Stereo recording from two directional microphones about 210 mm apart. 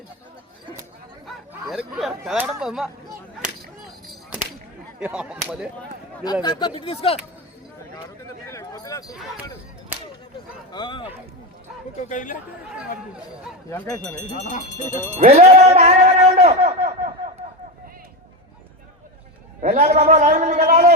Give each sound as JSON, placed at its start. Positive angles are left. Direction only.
{"t": 1.6, "sound": "speech", "side_deg": 0}
{"t": 4.9, "sound": "speech", "side_deg": -5}
{"t": 6.4, "sound": "speech", "side_deg": 20}
{"t": 8.4, "sound": "a sound", "side_deg": 15}
{"t": 10.7, "sound": "speech", "side_deg": 20}
{"t": 11.9, "sound": "speech", "side_deg": 35}
{"t": 14.3, "sound": "speech", "side_deg": 35}
{"t": 15.2, "sound": "a man's voice", "side_deg": -30}
{"t": 19.6, "sound": "a man's voice", "side_deg": -30}